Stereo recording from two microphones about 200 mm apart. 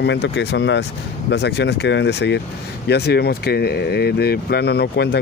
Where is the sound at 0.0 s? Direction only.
60° left (ahead or behind).